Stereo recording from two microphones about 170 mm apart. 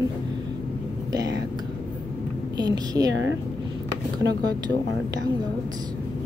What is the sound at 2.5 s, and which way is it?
Speech, 25° right (ahead or behind).